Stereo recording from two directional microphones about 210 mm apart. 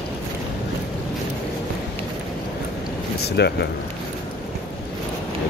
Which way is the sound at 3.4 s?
50° left (ahead or behind).